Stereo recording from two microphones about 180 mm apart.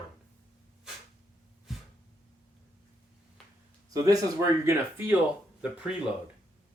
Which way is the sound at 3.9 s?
20° right (ahead or behind).